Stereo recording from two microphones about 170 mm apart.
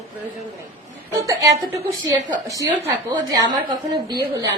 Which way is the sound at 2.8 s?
25° right (ahead or behind).